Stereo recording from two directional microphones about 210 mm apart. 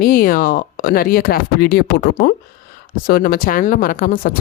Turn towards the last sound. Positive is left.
turn(degrees=40)  # may be behind; listen again after turning